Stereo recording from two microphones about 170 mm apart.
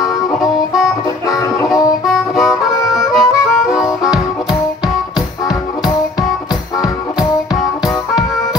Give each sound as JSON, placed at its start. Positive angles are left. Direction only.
{"t": 0.3, "sound": "music", "side_deg": 0}
{"t": 1.2, "sound": "music", "side_deg": 20}
{"t": 1.7, "sound": "harmonica", "side_deg": 0}